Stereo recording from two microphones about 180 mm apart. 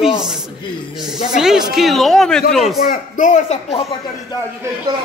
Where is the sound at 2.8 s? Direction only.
50° left (ahead or behind).